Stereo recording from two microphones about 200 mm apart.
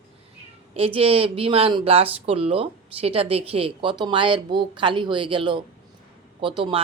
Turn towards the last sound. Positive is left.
turn(degrees=-25)  # may be behind; listen again after turning